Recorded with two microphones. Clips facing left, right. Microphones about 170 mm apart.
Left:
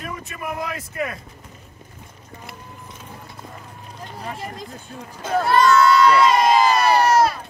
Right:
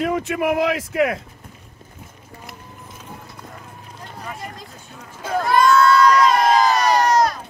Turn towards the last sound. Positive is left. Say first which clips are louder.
# even
turn(degrees=5)  # may be behind; listen again after turning